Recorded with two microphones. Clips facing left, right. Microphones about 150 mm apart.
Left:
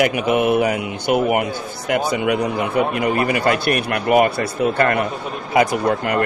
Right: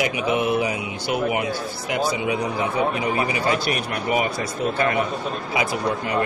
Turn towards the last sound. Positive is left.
turn(degrees=60)  # may be behind; listen again after turning